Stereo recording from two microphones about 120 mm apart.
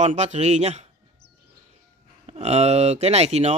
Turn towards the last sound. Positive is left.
turn(degrees=-65)  # may be behind; listen again after turning